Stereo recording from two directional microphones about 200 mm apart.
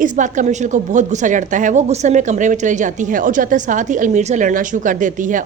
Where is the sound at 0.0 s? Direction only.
40° right (ahead or behind).